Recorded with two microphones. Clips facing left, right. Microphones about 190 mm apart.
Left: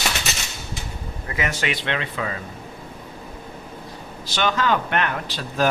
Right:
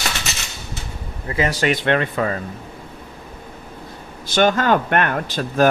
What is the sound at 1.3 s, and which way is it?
Speech, 35° right (ahead or behind).